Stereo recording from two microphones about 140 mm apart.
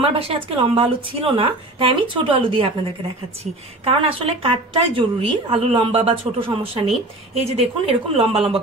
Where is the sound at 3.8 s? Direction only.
45° right (ahead or behind).